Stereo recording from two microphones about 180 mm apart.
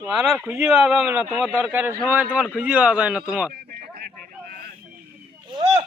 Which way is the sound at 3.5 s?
60° right (ahead or behind).